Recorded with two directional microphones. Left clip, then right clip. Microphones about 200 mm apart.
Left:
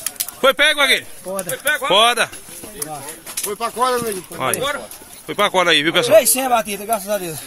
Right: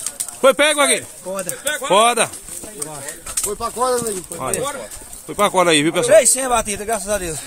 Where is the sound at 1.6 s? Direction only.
15° right (ahead or behind).